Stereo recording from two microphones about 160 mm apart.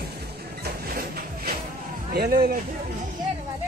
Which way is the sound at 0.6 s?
70° right (ahead or behind).